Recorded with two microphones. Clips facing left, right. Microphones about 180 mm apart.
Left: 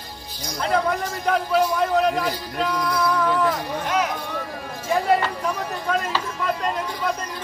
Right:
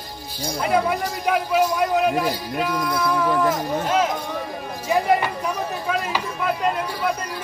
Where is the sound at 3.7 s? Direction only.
25° right (ahead or behind).